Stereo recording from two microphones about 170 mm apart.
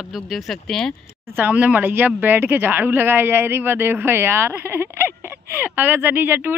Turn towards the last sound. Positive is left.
turn(degrees=-10)  # may be behind; listen again after turning